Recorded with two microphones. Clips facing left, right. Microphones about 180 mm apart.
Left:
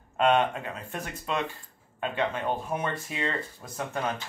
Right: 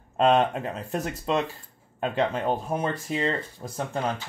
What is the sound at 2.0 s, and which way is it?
Speech, 40° right (ahead or behind).